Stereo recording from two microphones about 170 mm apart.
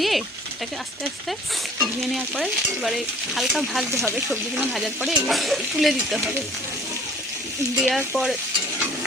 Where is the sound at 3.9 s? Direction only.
15° right (ahead or behind).